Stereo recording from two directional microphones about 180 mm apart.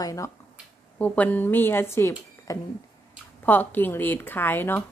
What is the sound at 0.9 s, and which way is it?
A woman's voice, 10° left (ahead or behind).